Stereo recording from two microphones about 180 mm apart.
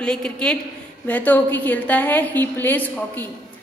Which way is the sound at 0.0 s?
5° left (ahead or behind).